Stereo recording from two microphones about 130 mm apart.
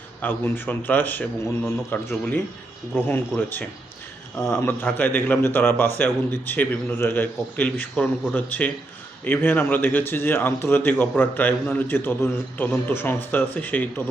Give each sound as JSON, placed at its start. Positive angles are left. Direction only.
{"t": 0.2, "sound": "a man's voice", "side_deg": 15}